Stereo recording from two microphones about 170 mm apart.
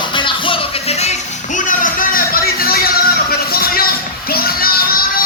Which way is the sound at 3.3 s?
60° left (ahead or behind).